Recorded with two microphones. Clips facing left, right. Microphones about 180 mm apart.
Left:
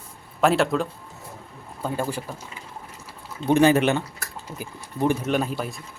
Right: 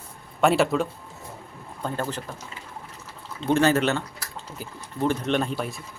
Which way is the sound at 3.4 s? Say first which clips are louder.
Left 3 dB; 15° left (ahead or behind).